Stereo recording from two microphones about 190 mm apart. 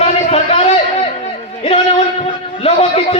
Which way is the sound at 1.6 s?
30° left (ahead or behind).